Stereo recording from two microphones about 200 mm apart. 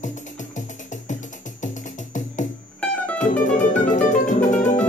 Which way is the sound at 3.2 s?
40° left (ahead or behind).